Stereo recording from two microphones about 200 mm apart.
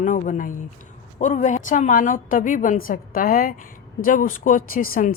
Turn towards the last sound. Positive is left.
turn(degrees=40)  # may be behind; listen again after turning